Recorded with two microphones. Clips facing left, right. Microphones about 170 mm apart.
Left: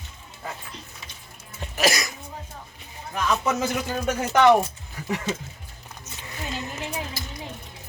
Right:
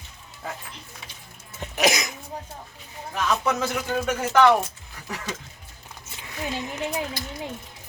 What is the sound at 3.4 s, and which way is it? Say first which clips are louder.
Speech: even; 10° left (ahead or behind).